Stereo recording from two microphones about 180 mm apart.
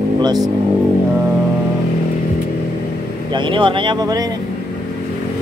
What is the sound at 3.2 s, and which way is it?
Speech, 25° right (ahead or behind).